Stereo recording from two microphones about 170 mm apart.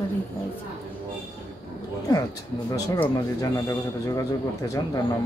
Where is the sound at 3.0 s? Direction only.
20° left (ahead or behind).